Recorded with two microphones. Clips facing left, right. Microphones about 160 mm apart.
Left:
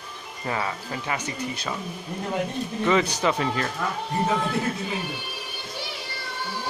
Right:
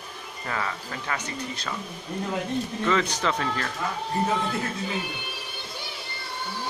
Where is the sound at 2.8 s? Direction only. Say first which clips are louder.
Left 4 dB; 15° left (ahead or behind).